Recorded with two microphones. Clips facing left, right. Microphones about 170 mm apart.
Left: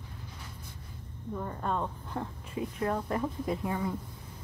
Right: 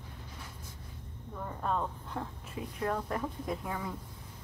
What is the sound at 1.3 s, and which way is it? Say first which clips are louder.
Speech: left 1 dB; centre (ahead or behind).